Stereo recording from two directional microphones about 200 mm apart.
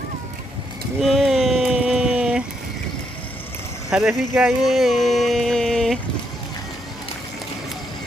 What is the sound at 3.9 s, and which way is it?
Speech, centre (ahead or behind).